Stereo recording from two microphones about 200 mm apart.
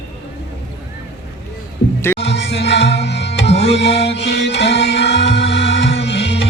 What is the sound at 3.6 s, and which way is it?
Music, 60° left (ahead or behind).